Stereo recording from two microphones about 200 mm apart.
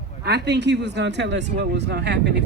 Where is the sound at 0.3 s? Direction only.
55° right (ahead or behind).